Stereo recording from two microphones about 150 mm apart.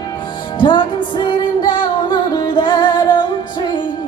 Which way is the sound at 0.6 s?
35° left (ahead or behind).